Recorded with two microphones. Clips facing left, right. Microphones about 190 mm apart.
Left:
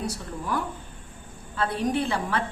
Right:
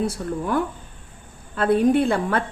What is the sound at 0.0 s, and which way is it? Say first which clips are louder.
Speech: right 8 dB; 55° right (ahead or behind).